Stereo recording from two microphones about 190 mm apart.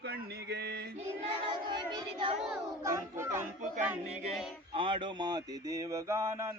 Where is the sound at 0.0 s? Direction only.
60° right (ahead or behind).